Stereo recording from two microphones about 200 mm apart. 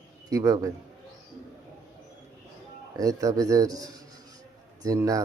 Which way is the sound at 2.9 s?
15° right (ahead or behind).